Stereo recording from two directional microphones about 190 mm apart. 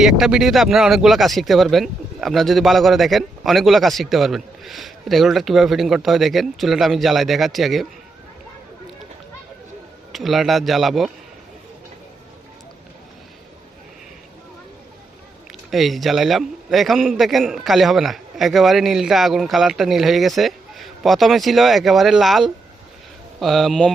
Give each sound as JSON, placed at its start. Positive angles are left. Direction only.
{"t": 0.0, "sound": "speech", "side_deg": 0}
{"t": 10.1, "sound": "speech", "side_deg": 0}
{"t": 15.7, "sound": "speech", "side_deg": 0}